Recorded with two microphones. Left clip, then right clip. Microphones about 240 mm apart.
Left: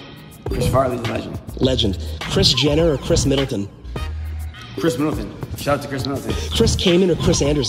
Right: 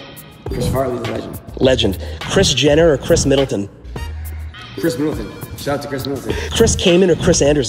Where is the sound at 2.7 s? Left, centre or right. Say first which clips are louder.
Right 6 dB; right.